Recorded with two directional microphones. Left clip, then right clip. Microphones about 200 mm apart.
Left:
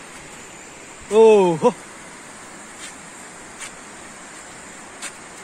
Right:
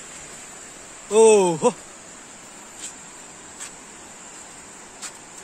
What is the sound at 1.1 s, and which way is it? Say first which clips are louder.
Speech: left 2 dB; 20° right (ahead or behind).